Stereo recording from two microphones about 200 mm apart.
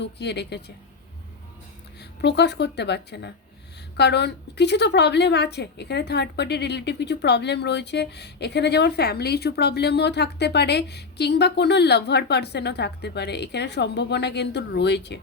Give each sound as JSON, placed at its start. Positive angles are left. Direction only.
{"t": 0.0, "sound": "a woman's voice", "side_deg": 55}
{"t": 2.0, "sound": "a woman's voice", "side_deg": 60}